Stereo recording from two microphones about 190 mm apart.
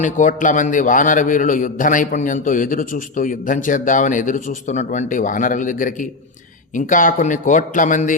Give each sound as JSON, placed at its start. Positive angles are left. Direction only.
{"t": 0.0, "sound": "a man's voice", "side_deg": 45}